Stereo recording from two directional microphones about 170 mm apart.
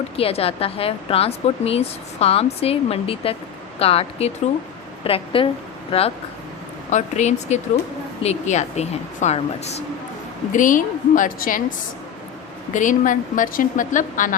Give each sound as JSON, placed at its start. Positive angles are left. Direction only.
{"t": 0.2, "sound": "a woman's voice", "side_deg": 35}
{"t": 10.5, "sound": "a woman's voice", "side_deg": 50}
{"t": 12.7, "sound": "a woman's voice", "side_deg": 50}